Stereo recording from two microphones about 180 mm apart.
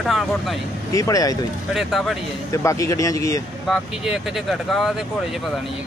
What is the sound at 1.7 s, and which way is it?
Speech, centre (ahead or behind).